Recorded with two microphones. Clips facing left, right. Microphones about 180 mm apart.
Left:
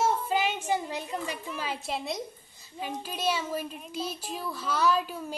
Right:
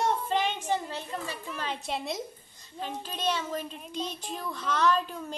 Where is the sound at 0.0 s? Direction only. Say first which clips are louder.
Left 1 dB; 5° left (ahead or behind).